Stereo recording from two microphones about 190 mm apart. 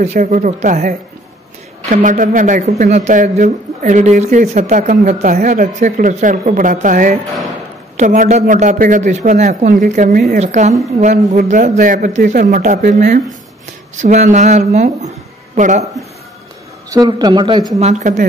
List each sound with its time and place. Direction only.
0.0 s speech: 40° right (ahead or behind)
16.9 s a man's voice: 20° right (ahead or behind)
17.7 s speech: 35° right (ahead or behind)